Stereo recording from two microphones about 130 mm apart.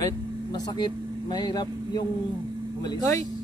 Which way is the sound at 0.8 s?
35° left (ahead or behind).